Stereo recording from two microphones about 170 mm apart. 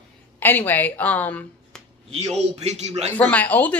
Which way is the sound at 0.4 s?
10° left (ahead or behind).